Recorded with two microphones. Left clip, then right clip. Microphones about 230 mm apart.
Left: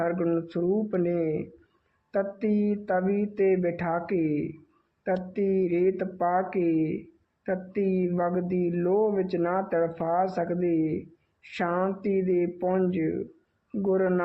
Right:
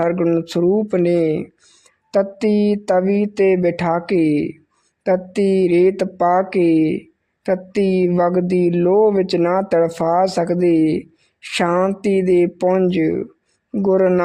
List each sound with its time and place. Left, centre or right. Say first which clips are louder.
0.0 s speech: right 9 dB; right